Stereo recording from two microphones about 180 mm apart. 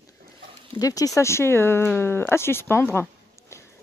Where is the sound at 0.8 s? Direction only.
20° left (ahead or behind).